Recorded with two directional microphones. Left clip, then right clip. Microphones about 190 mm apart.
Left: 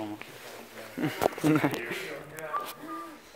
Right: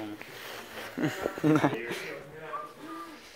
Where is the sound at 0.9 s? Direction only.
Centre (ahead or behind).